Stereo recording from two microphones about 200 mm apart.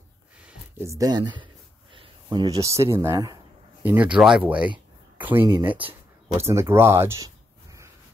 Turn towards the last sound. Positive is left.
turn(degrees=-15)  # may be behind; listen again after turning